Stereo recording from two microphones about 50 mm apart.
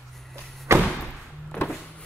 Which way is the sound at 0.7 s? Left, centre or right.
Right.